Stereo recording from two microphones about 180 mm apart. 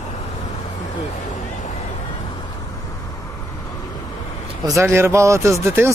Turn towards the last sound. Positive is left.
turn(degrees=-15)  # may be behind; listen again after turning